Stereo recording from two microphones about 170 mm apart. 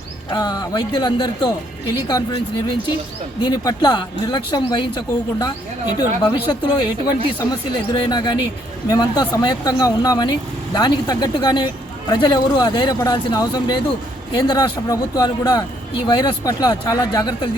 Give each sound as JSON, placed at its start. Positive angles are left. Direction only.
{"t": 0.3, "sound": "a man's voice", "side_deg": 25}
{"t": 3.4, "sound": "a man's voice", "side_deg": 25}